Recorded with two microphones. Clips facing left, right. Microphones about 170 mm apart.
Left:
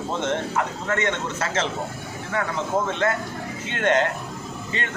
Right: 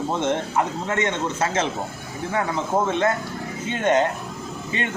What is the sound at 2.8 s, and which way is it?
A man's voice, 15° right (ahead or behind).